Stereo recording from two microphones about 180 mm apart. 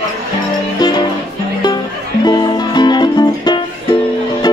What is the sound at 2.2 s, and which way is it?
Music, 25° left (ahead or behind).